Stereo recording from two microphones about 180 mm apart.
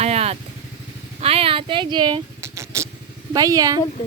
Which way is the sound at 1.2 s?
30° right (ahead or behind).